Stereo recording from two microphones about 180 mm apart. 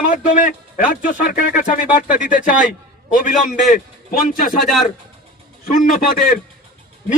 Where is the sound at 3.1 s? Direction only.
50° left (ahead or behind).